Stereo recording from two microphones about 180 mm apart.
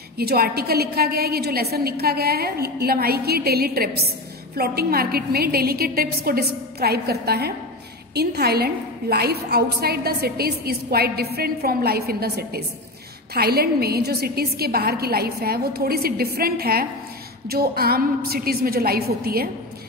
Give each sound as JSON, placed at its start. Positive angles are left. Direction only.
{"t": 0.2, "sound": "a woman's voice", "side_deg": -60}